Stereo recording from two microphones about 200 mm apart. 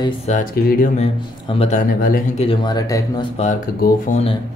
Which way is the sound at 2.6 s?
15° left (ahead or behind).